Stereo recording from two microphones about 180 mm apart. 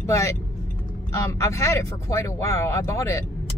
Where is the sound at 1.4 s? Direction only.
15° left (ahead or behind).